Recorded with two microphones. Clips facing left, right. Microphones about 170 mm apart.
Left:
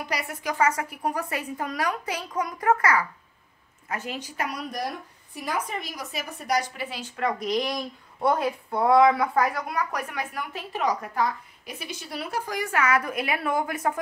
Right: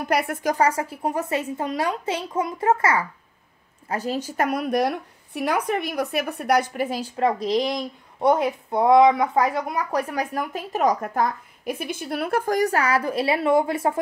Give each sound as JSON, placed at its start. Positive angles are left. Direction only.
{"t": 0.1, "sound": "a woman's voice", "side_deg": -55}